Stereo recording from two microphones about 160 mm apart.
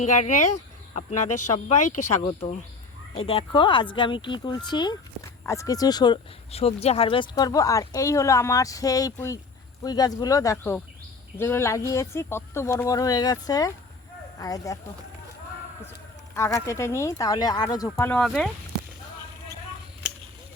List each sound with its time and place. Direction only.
0.0 s speech: 50° left (ahead or behind)
2.2 s speech: 35° left (ahead or behind)
6.5 s speech: 40° left (ahead or behind); by 14.8 s 20° left (ahead or behind)
16.3 s speech: 20° left (ahead or behind)
18.1 s speech: centre (ahead or behind)